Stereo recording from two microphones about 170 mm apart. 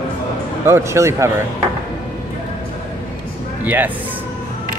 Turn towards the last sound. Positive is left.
turn(degrees=-10)  # may be behind; listen again after turning